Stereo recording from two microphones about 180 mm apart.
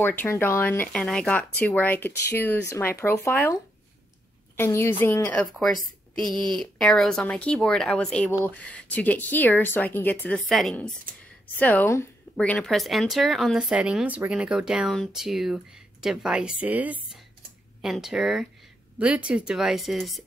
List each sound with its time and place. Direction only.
0.0 s speech: 10° left (ahead or behind)
4.6 s speech: 15° left (ahead or behind)
6.1 s speech: 25° right (ahead or behind)
6.6 s speech: centre (ahead or behind)